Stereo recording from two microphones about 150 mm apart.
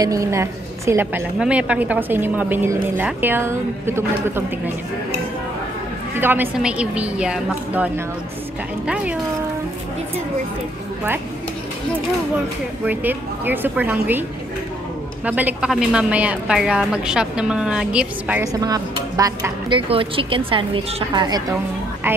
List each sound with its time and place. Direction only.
0.0 s a woman's voice: 20° right (ahead or behind)
6.1 s a woman's voice: 15° right (ahead or behind)
12.8 s a woman's voice: 10° right (ahead or behind)
15.2 s a woman's voice: 10° right (ahead or behind)
18.4 s speech: 25° right (ahead or behind)
19.9 s a woman's voice: 35° right (ahead or behind)